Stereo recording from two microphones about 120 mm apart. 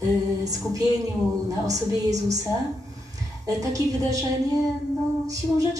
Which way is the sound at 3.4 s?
30° right (ahead or behind).